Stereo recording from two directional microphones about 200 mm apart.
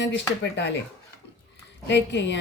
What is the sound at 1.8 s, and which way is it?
Speech, 60° left (ahead or behind).